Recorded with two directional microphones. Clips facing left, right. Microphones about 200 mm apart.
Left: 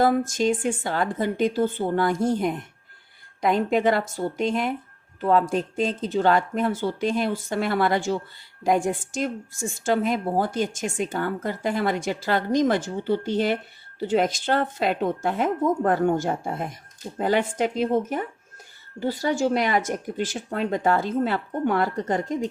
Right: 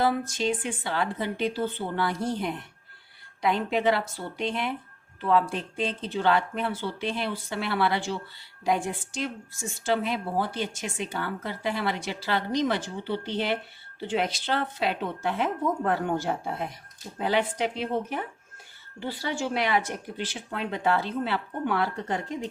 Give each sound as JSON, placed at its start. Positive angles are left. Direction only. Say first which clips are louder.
{"t": 0.0, "sound": "a woman's voice", "louder": "left 5 dB", "side_deg": 45}